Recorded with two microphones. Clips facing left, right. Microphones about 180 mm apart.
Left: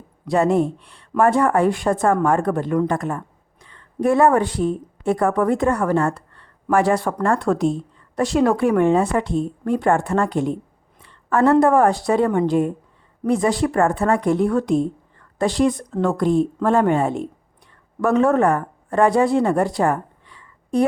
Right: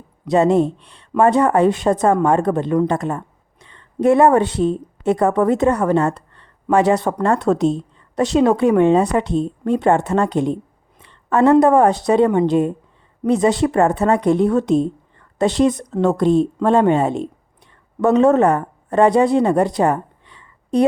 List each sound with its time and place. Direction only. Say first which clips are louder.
0.3 s speech: right 3 dB; 20° right (ahead or behind)